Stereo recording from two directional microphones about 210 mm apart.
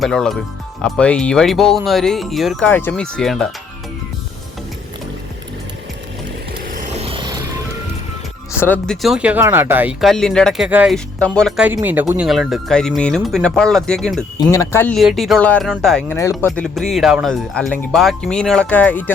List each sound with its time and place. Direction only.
0.0 s speech: centre (ahead or behind)
6.7 s vehicle: 35° right (ahead or behind)
8.6 s speech: 5° left (ahead or behind)
14.5 s speech: 15° left (ahead or behind)